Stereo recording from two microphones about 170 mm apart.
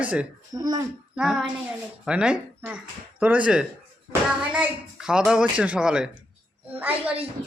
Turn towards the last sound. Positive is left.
turn(degrees=-10)  # may be behind; listen again after turning